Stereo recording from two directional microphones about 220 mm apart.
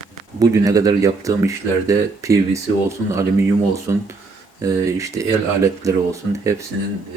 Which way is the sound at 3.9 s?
15° right (ahead or behind).